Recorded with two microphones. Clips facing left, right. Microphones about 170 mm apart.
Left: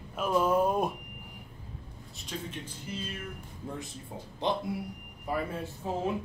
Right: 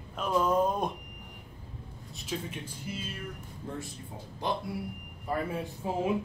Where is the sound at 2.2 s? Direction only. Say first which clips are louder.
Right 2 dB; 5° right (ahead or behind).